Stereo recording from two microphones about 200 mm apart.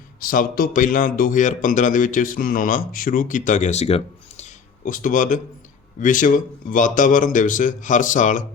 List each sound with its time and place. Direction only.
0.2 s a man's voice: 45° left (ahead or behind)